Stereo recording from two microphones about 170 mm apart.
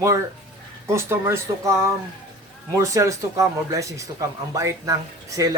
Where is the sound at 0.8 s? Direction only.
15° right (ahead or behind).